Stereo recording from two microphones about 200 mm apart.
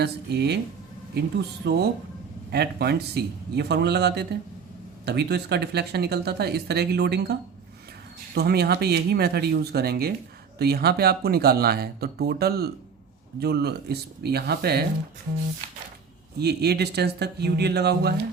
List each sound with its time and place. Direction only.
0.0 s speech: 55° right (ahead or behind)
8.4 s speech: 55° right (ahead or behind)
16.4 s speech: 55° right (ahead or behind)